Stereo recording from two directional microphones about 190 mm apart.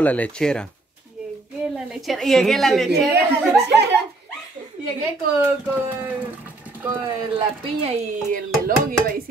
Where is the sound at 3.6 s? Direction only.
60° right (ahead or behind).